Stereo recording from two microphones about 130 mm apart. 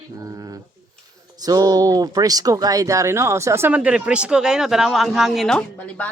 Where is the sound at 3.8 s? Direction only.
10° right (ahead or behind); by 6.1 s 10° left (ahead or behind).